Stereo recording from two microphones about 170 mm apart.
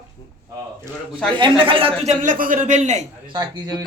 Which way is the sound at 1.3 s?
30° right (ahead or behind).